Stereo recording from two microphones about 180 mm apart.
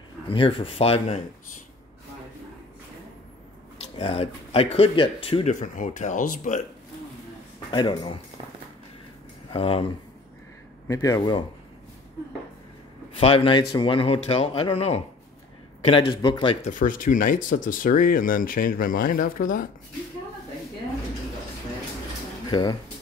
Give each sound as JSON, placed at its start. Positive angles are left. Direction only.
{"t": 0.3, "sound": "speech", "side_deg": 30}
{"t": 3.8, "sound": "speech", "side_deg": 35}
{"t": 7.7, "sound": "a man's voice", "side_deg": 25}
{"t": 9.5, "sound": "speech", "side_deg": 30}
{"t": 10.9, "sound": "a man's voice", "side_deg": 20}
{"t": 13.2, "sound": "a man's voice", "side_deg": 30}
{"t": 16.7, "sound": "speech", "side_deg": 50}
{"t": 22.5, "sound": "speech", "side_deg": 20}